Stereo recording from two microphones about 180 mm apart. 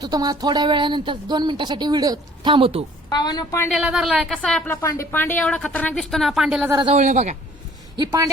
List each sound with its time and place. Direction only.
0.0 s speech: 20° right (ahead or behind)
3.1 s a woman's voice: 25° left (ahead or behind)
3.7 s a woman's voice: centre (ahead or behind)
6.8 s speech: 40° right (ahead or behind)
7.9 s speech: 20° right (ahead or behind)